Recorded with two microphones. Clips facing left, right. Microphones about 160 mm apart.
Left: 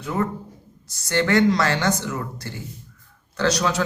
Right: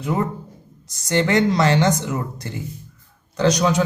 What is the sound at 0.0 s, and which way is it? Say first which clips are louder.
Speech: right 2 dB; 20° right (ahead or behind).